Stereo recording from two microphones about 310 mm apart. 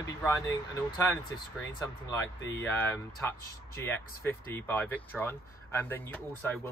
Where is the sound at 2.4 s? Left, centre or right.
Centre.